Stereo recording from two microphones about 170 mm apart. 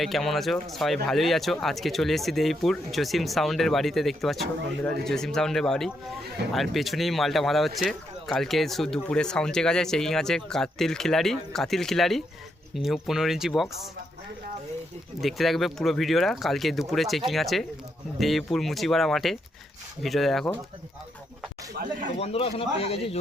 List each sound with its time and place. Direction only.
0.0 s speech: centre (ahead or behind)
15.2 s speech: centre (ahead or behind)
22.2 s speech: 35° left (ahead or behind)